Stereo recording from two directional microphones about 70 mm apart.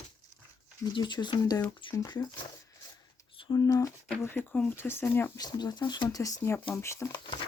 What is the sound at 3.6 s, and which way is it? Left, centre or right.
Speech, left.